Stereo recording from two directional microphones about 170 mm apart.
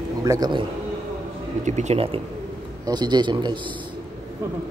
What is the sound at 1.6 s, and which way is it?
Speech, 40° right (ahead or behind).